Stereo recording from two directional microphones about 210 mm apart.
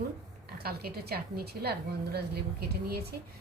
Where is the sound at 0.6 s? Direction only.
45° right (ahead or behind).